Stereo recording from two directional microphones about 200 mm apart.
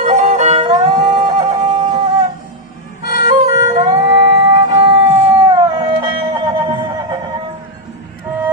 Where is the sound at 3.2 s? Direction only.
20° right (ahead or behind).